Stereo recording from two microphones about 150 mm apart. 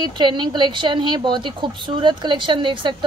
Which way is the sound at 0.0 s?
30° right (ahead or behind).